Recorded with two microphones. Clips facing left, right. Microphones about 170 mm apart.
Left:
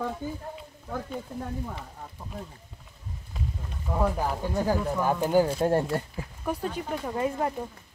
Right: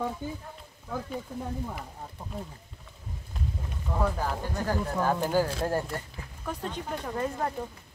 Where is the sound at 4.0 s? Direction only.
10° left (ahead or behind); by 6.0 s 25° left (ahead or behind).